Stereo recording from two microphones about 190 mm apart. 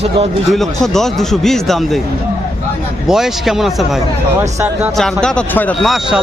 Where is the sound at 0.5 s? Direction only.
Centre (ahead or behind).